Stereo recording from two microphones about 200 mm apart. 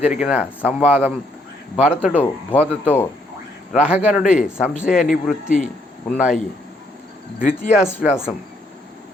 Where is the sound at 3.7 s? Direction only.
5° right (ahead or behind).